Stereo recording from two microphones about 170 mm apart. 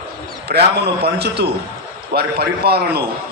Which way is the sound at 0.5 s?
65° right (ahead or behind).